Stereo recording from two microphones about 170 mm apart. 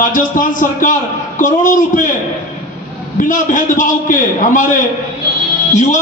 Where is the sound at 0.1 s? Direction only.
50° left (ahead or behind).